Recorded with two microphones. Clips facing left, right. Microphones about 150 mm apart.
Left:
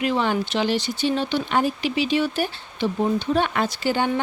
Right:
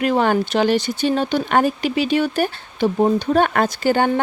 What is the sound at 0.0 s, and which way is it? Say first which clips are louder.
Speech: right 5 dB; 50° right (ahead or behind).